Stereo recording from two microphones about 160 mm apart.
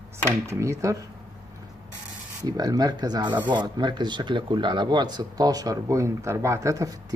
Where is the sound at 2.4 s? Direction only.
25° right (ahead or behind).